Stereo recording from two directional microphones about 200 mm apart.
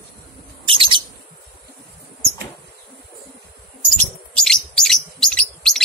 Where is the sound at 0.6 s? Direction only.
25° right (ahead or behind).